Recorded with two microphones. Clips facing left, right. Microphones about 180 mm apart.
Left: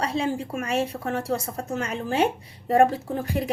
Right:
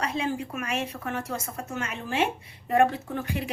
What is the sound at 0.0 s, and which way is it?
Speech, 35° left (ahead or behind).